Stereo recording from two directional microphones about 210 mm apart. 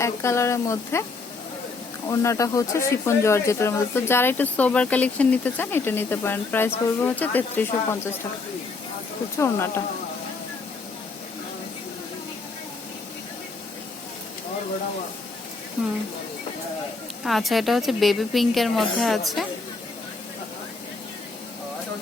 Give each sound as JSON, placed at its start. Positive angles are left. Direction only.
{"t": 0.0, "sound": "speech", "side_deg": 15}
{"t": 2.0, "sound": "speech", "side_deg": 15}
{"t": 9.4, "sound": "speech", "side_deg": 10}
{"t": 17.2, "sound": "a woman's voice", "side_deg": 0}